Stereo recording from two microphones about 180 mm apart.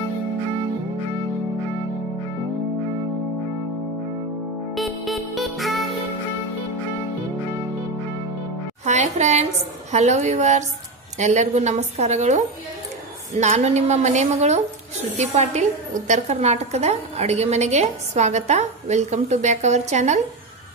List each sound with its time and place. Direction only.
4.7 s music: centre (ahead or behind)
8.8 s a woman's voice: 40° right (ahead or behind)